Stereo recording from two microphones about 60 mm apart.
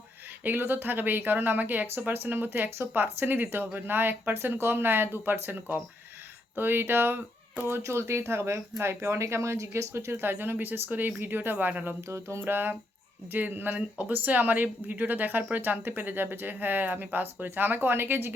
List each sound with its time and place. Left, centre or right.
0.4 s a woman's voice: right
7.8 s speech: right
10.1 s a woman's voice: right
12.0 s speech: right
12.5 s a woman's voice: right